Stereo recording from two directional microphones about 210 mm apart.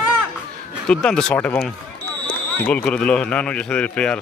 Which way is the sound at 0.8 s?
5° left (ahead or behind).